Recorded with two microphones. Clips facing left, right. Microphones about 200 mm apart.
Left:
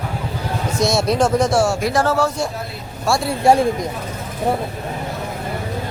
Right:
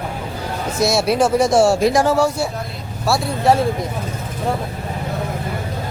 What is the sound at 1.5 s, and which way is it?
Speech, 30° right (ahead or behind).